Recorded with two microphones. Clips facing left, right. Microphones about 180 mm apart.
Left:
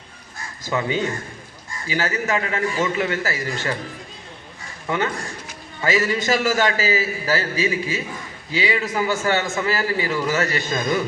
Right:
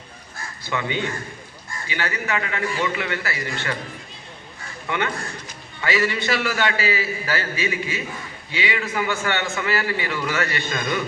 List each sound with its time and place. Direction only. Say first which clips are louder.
0.6 s a man's voice: left 3 dB; 40° left (ahead or behind)
5.8 s a man's voice: left 2 dB; 40° left (ahead or behind)